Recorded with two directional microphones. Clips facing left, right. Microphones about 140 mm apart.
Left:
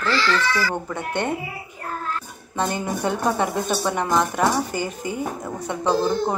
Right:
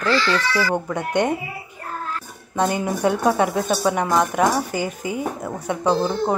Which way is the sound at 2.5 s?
10° right (ahead or behind).